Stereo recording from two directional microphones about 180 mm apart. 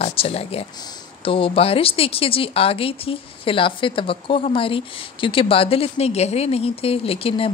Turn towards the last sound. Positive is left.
turn(degrees=30)  # may be behind; listen again after turning